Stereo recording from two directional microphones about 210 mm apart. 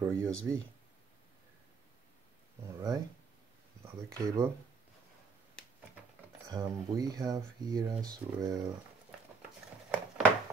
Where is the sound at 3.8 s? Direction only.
15° right (ahead or behind).